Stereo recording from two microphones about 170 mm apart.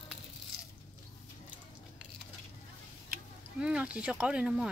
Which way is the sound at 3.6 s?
5° right (ahead or behind).